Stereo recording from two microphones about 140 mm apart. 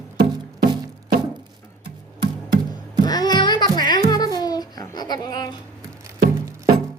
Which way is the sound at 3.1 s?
30° left (ahead or behind).